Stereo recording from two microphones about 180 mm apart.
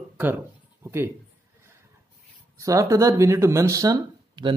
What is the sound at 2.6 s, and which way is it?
Speech, 20° right (ahead or behind).